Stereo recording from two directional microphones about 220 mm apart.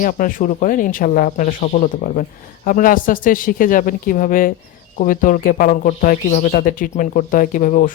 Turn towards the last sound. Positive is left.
turn(degrees=40)  # may be behind; listen again after turning